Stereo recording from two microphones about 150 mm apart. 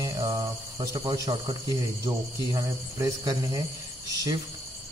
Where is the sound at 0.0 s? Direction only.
25° right (ahead or behind).